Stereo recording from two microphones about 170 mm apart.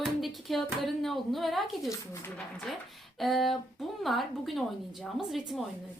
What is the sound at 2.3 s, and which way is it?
A woman's voice, 5° left (ahead or behind).